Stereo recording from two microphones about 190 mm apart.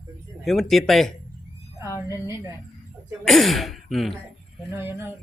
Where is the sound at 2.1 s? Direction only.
15° right (ahead or behind).